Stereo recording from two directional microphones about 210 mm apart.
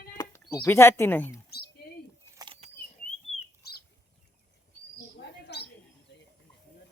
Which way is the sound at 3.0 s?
45° left (ahead or behind).